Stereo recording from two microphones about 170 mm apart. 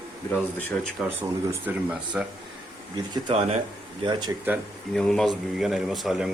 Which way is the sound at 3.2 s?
35° right (ahead or behind).